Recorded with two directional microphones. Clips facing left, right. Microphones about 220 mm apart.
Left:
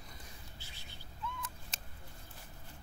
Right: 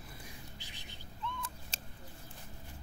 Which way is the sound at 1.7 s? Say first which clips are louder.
Right 3 dB; 30° right (ahead or behind).